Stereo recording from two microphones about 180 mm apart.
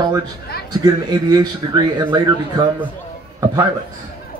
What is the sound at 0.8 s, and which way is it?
Speech, 20° right (ahead or behind).